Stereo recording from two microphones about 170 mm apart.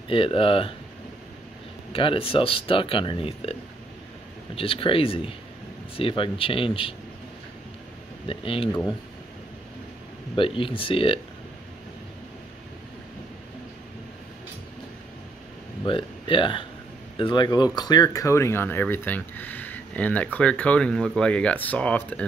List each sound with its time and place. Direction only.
0.1 s speech: 30° left (ahead or behind)
1.9 s speech: 30° left (ahead or behind)
4.6 s speech: 30° left (ahead or behind)
8.3 s speech: 30° left (ahead or behind)
10.3 s speech: 30° left (ahead or behind)
15.8 s speech: 30° left (ahead or behind); by 22.2 s 5° left (ahead or behind)